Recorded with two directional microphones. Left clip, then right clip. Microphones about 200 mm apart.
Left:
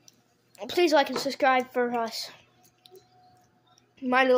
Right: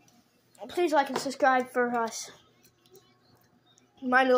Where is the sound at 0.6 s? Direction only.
35° left (ahead or behind); by 2.2 s 15° left (ahead or behind).